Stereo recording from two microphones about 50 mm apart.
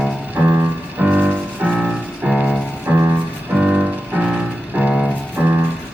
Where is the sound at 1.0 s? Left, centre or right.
Right.